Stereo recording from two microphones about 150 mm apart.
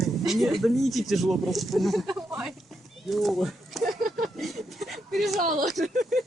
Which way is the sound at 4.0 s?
70° right (ahead or behind).